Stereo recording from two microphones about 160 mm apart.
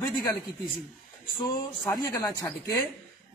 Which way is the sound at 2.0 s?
20° left (ahead or behind).